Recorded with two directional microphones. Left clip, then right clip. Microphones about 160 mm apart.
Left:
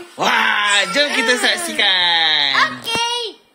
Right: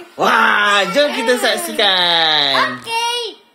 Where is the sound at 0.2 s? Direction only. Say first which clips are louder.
Right 3 dB; 55° right (ahead or behind).